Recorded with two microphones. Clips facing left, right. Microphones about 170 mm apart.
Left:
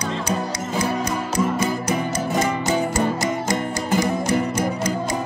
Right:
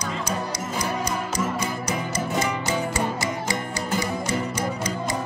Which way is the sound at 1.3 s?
55° left (ahead or behind).